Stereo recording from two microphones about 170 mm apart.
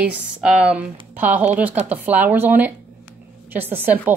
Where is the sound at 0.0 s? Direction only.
5° right (ahead or behind).